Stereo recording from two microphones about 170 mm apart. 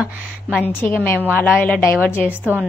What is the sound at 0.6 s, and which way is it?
A woman's voice, 10° left (ahead or behind).